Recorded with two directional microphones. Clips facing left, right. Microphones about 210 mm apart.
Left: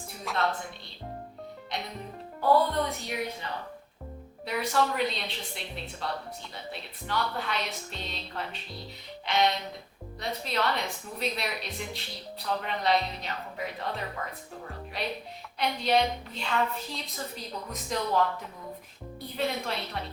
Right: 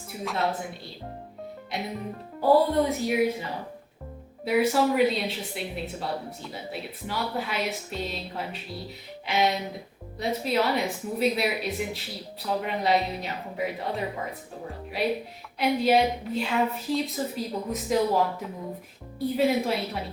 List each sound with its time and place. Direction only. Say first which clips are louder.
0.1 s a woman's voice: right 2 dB; 5° right (ahead or behind)
2.6 s a woman's voice: right 7 dB; 5° right (ahead or behind)
19.4 s a woman's voice: right 7 dB; 5° right (ahead or behind)